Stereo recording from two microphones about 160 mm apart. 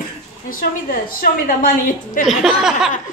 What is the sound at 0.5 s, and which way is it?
A woman's voice, 60° left (ahead or behind).